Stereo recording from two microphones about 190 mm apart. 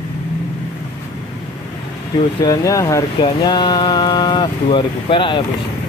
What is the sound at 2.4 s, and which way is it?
Speech, 20° left (ahead or behind).